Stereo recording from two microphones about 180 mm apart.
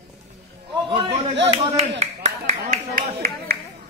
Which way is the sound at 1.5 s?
35° right (ahead or behind).